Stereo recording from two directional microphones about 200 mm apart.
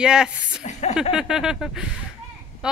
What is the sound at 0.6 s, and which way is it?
Speech, 35° left (ahead or behind).